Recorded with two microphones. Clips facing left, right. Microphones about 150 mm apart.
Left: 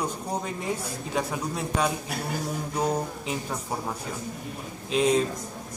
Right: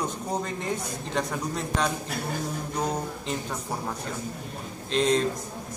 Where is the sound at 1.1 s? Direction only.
5° left (ahead or behind).